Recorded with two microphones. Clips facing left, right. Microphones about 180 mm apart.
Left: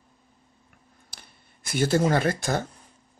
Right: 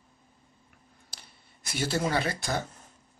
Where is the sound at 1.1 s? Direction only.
50° left (ahead or behind).